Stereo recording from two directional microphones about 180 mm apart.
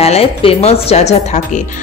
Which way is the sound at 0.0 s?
35° left (ahead or behind).